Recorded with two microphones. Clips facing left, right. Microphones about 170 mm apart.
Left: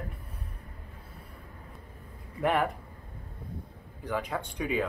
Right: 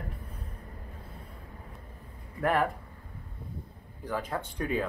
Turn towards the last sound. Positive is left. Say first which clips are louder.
# left 1 dB
turn(degrees=5)  # may be behind; listen again after turning